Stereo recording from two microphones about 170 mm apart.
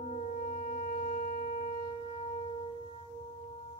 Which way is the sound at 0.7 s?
45° left (ahead or behind).